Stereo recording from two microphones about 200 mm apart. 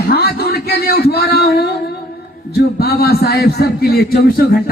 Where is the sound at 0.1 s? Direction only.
50° left (ahead or behind).